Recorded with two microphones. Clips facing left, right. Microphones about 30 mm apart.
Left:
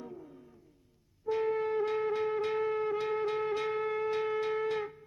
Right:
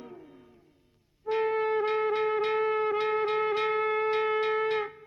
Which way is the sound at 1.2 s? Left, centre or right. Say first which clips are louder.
Right 3 dB; right.